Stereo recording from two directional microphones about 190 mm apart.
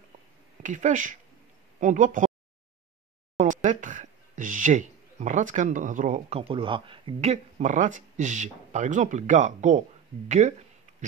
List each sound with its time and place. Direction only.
0.6 s speech: 40° right (ahead or behind)
3.3 s speech: 40° right (ahead or behind)
6.4 s speech: 25° right (ahead or behind)